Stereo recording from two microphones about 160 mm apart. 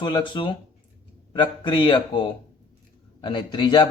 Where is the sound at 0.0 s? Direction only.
30° left (ahead or behind).